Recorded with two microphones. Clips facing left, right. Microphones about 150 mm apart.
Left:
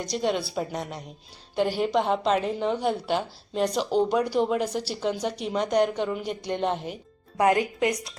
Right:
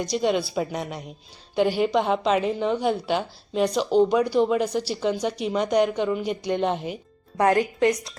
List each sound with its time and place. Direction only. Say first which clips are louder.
0.0 s a woman's voice: right 3 dB; centre (ahead or behind)
7.3 s a woman's voice: right 2 dB; 15° left (ahead or behind)